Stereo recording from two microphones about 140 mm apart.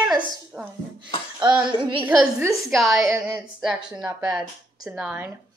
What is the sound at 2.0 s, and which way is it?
A woman's voice, 5° right (ahead or behind).